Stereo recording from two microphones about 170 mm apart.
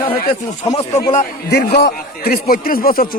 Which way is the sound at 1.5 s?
80° left.